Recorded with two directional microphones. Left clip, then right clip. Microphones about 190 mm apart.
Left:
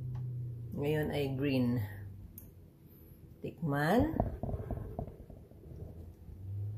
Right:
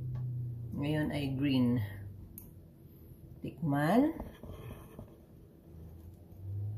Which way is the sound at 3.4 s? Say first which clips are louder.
Right 1 dB; 30° left (ahead or behind).